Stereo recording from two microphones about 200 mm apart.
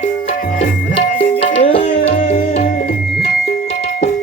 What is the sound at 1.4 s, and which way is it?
Music, 30° left (ahead or behind).